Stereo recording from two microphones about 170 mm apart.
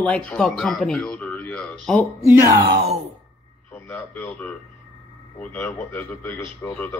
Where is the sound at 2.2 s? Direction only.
15° right (ahead or behind).